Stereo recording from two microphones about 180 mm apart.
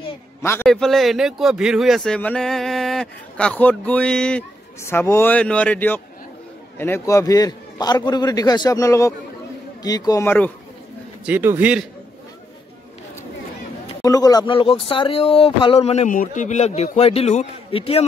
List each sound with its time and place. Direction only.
0.4 s a man's voice: 15° left (ahead or behind)
0.7 s a man's voice: centre (ahead or behind)
11.2 s a man's voice: 10° right (ahead or behind)
14.0 s a man's voice: 20° left (ahead or behind)